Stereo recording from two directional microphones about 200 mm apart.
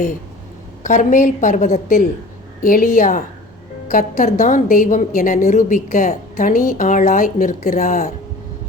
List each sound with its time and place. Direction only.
0.8 s a woman's voice: 40° left (ahead or behind)